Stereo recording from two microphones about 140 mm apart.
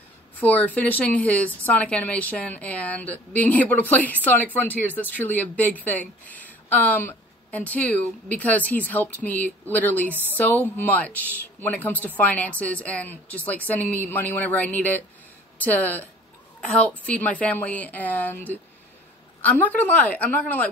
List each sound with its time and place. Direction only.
0.4 s a woman's voice: 10° left (ahead or behind)